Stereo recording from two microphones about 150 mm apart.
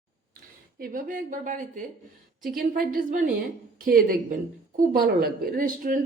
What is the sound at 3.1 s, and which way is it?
Speech, 60° right (ahead or behind).